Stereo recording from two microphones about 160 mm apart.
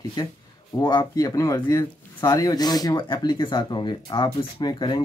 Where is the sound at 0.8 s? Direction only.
25° left (ahead or behind).